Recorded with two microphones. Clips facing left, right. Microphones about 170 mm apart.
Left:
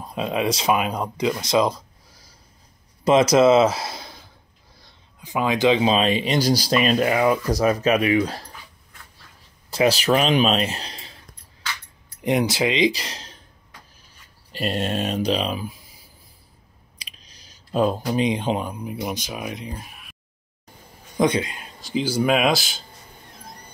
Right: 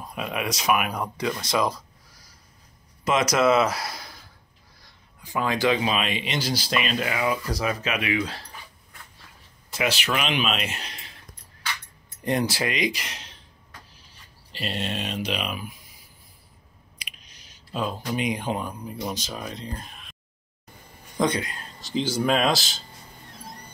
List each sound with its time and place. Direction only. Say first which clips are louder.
0.0 s speech: left 6 dB; 25° left (ahead or behind)
3.0 s speech: left 7 dB; 30° left (ahead or behind)
9.7 s speech: left 8 dB; 35° left (ahead or behind)
12.2 s speech: left 4 dB; 15° left (ahead or behind); by 13.4 s 35° left (ahead or behind)
14.5 s speech: left 6 dB; 45° left (ahead or behind)
17.0 s clicking: even; 35° left (ahead or behind)
18.0 s speech: left 5 dB; 30° left (ahead or behind); by 20.2 s 5° left (ahead or behind)
21.2 s speech: left 4 dB; 20° left (ahead or behind)